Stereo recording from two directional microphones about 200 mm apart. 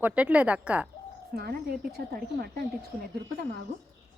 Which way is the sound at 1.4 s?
50° right (ahead or behind).